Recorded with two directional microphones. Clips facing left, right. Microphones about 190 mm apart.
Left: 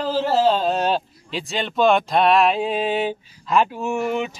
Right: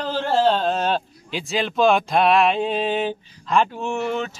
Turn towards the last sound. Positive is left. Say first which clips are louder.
# left 2 dB
turn(degrees=10)  # may be behind; listen again after turning